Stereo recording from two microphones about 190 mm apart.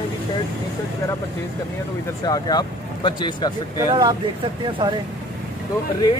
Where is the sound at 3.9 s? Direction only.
20° right (ahead or behind).